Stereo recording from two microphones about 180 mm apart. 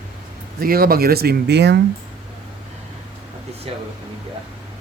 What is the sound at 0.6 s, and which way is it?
Speech, 55° right (ahead or behind).